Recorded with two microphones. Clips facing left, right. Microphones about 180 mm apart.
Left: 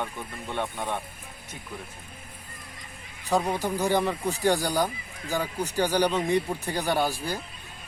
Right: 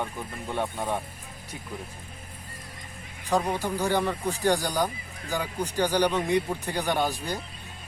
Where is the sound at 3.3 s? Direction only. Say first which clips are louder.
Left 1 dB; 15° left (ahead or behind).